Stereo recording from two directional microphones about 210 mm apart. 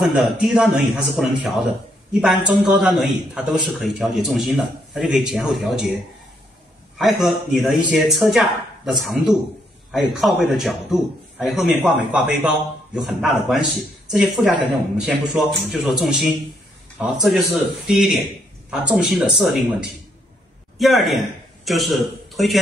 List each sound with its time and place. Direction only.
0.0 s a man's voice: centre (ahead or behind)
7.0 s a man's voice: centre (ahead or behind)